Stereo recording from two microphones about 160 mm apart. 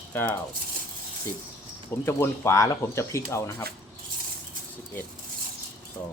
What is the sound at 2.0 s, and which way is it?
Speech, 15° left (ahead or behind).